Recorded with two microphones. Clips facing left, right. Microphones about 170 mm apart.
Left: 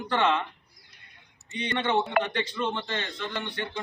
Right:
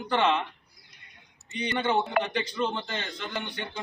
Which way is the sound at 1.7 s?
5° right (ahead or behind).